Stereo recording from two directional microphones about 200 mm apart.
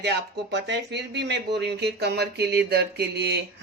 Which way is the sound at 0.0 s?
60° right (ahead or behind).